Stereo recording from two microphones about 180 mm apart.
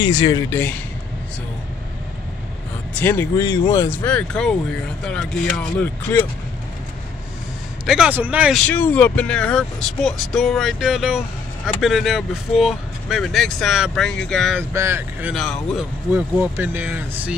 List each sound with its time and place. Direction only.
0.0 s speech: 25° left (ahead or behind)
2.9 s speech: 10° left (ahead or behind)
7.8 s speech: 5° right (ahead or behind)
8.6 s speech: 10° left (ahead or behind)
14.7 s speech: 15° right (ahead or behind)
15.3 s speech: 5° left (ahead or behind)
16.1 s speech: 10° right (ahead or behind)